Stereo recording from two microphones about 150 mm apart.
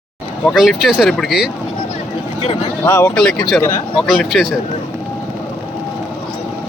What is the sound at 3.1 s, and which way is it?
Speech, 5° left (ahead or behind).